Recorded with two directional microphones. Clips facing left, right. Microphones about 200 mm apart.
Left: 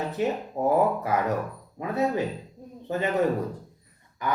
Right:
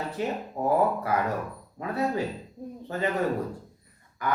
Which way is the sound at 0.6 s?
20° left (ahead or behind).